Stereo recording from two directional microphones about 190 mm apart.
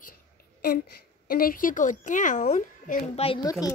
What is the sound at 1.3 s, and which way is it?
A woman's voice, 50° left (ahead or behind).